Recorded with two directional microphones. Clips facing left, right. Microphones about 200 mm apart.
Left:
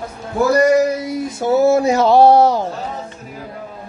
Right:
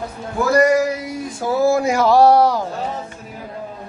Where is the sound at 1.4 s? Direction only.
25° left (ahead or behind).